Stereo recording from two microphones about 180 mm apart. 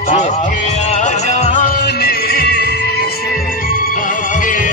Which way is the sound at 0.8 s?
40° left (ahead or behind).